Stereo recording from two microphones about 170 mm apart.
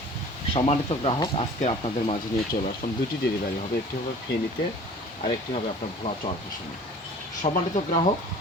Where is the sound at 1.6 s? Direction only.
40° left (ahead or behind).